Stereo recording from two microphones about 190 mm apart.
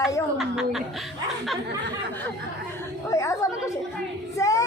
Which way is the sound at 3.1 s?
15° left (ahead or behind).